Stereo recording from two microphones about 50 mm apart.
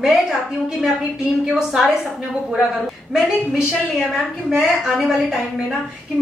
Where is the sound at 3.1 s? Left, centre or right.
Centre.